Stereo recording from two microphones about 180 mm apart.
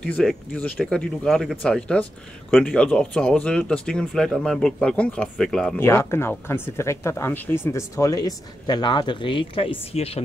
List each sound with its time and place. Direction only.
0.0 s speech: 5° left (ahead or behind)
5.9 s speech: 15° left (ahead or behind); by 10.2 s 35° left (ahead or behind)